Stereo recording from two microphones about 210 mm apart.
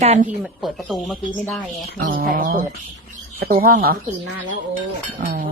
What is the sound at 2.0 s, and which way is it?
A woman's voice, 40° right (ahead or behind).